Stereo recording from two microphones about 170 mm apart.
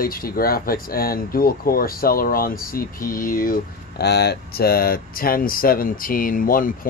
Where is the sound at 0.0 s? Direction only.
60° left (ahead or behind).